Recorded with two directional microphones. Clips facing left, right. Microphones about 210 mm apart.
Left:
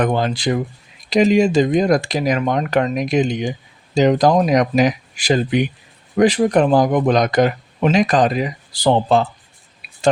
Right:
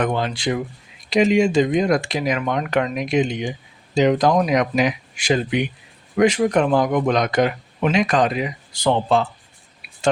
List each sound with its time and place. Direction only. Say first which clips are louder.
0.0 s speech: left 3 dB; 40° left (ahead or behind)